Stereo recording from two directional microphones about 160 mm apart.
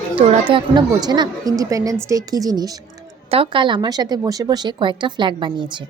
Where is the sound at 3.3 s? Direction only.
35° right (ahead or behind).